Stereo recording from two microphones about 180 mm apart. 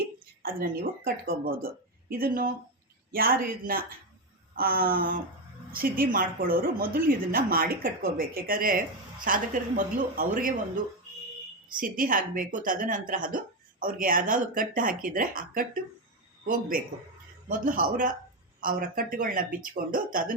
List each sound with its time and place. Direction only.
0.0 s speech: 55° right (ahead or behind)
4.5 s a sound: 55° right (ahead or behind)
5.7 s speech: 55° right (ahead or behind)
11.8 s speech: 50° right (ahead or behind)